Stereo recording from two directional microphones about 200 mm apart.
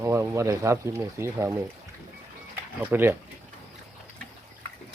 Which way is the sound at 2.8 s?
10° right (ahead or behind).